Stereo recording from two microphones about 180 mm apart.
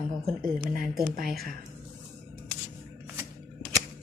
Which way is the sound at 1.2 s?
Centre (ahead or behind).